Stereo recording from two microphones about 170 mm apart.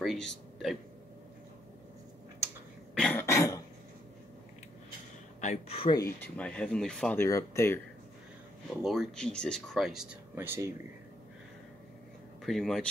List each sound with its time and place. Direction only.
0.0 s hiccup: centre (ahead or behind)
2.9 s cough: 5° left (ahead or behind)
5.4 s speech: 40° left (ahead or behind)
5.9 s speech: 10° left (ahead or behind)
7.2 s speech: 15° left (ahead or behind)
8.8 s speech: centre (ahead or behind)
12.4 s speech: centre (ahead or behind)